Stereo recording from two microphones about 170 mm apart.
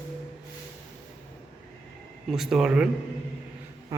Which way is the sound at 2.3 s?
Centre (ahead or behind).